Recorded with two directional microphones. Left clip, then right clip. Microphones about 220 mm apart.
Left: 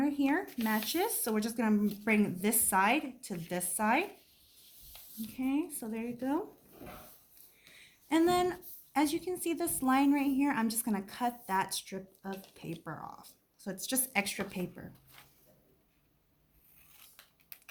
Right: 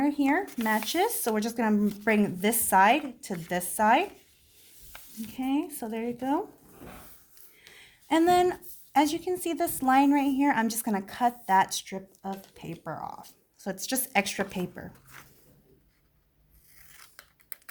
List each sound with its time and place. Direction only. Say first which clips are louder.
0.0 s speech: right 5 dB; 50° right (ahead or behind)
5.3 s speech: right 4 dB; 50° right (ahead or behind)
7.7 s speech: right 5 dB; 50° right (ahead or behind)